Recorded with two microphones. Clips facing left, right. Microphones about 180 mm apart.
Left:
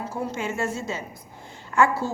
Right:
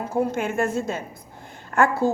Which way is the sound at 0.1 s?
55° right (ahead or behind).